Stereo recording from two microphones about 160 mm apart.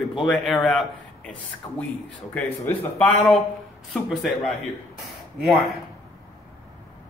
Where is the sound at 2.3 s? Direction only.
10° left (ahead or behind).